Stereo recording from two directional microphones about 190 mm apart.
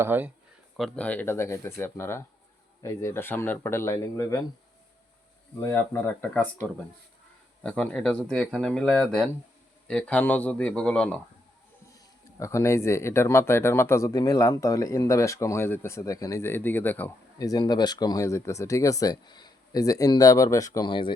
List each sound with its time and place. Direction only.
0.0 s speech: 10° right (ahead or behind)
0.8 s speech: 5° left (ahead or behind)
5.5 s speech: 15° left (ahead or behind)
12.4 s speech: 15° left (ahead or behind)